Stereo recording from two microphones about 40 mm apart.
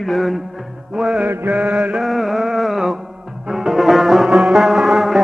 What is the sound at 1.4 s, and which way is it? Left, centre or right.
Chant, right.